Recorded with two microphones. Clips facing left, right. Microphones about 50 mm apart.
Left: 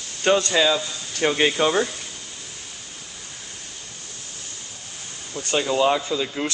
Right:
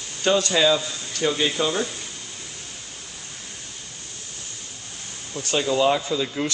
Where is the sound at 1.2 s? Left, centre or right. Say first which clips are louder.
Left 3 dB; left.